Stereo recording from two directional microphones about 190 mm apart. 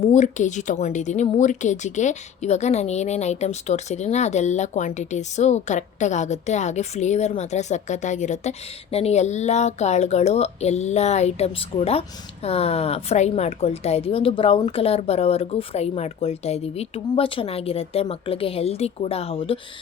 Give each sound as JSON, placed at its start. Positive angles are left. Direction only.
{"t": 0.0, "sound": "speech", "side_deg": 40}